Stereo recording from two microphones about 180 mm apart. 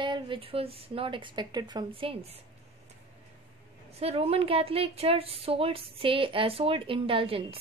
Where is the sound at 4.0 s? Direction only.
35° right (ahead or behind).